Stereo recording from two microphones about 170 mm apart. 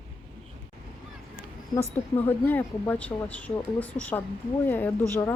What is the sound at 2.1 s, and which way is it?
Speech, 10° left (ahead or behind).